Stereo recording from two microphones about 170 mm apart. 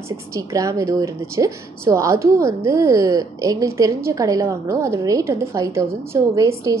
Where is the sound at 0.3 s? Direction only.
20° right (ahead or behind).